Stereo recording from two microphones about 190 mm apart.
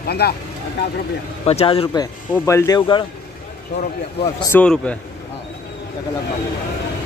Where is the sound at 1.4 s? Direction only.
30° left (ahead or behind).